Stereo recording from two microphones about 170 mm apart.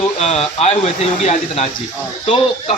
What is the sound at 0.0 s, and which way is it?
Speech, 40° left (ahead or behind).